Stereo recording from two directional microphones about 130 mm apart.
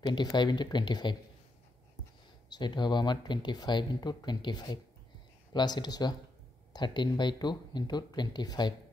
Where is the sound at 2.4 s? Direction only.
35° left (ahead or behind).